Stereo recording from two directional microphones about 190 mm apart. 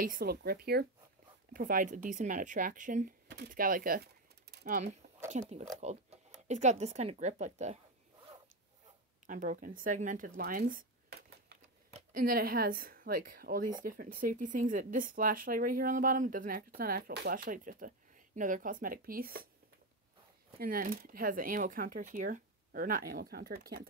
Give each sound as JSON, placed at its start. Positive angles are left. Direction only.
{"t": 0.0, "sound": "speech", "side_deg": -50}
{"t": 9.2, "sound": "speech", "side_deg": -45}
{"t": 20.5, "sound": "speech", "side_deg": -50}